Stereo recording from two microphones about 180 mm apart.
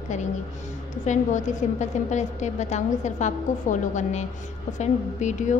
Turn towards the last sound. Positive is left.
turn(degrees=40)  # may be behind; listen again after turning